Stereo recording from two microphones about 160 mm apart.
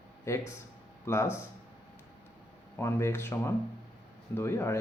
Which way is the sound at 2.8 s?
15° left (ahead or behind).